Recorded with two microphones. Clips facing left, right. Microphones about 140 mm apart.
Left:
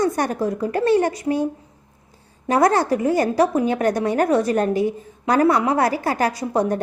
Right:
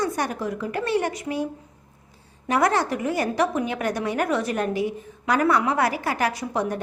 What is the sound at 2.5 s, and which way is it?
A woman's voice, 40° left (ahead or behind).